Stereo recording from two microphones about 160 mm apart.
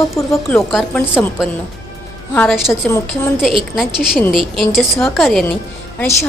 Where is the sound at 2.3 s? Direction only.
10° left (ahead or behind).